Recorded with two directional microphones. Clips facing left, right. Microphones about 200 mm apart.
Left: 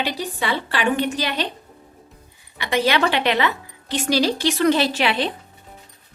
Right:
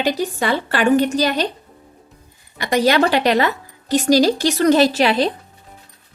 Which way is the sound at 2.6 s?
45° right (ahead or behind).